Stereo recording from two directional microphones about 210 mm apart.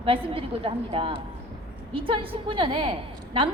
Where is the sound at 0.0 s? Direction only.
25° right (ahead or behind).